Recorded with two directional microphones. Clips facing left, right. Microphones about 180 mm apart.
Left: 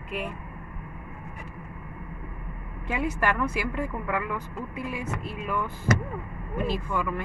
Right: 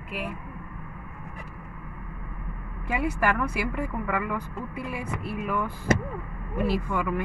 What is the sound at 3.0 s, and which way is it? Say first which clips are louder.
Speech: even; 5° right (ahead or behind).